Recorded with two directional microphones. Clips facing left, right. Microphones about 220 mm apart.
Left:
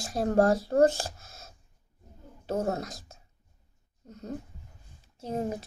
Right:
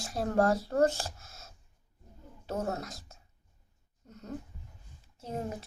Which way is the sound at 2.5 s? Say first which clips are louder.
Left 4 dB; 35° left (ahead or behind).